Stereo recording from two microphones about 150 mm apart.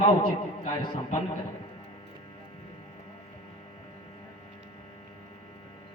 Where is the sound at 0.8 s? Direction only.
35° left (ahead or behind).